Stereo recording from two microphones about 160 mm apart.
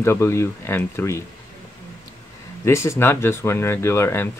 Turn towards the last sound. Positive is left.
turn(degrees=15)  # may be behind; listen again after turning